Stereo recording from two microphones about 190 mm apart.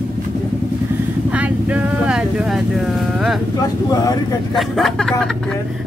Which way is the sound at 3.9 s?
20° left (ahead or behind).